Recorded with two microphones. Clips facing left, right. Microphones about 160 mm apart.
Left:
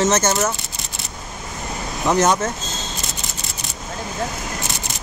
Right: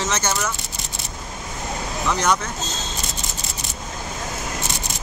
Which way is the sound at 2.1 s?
45° left (ahead or behind).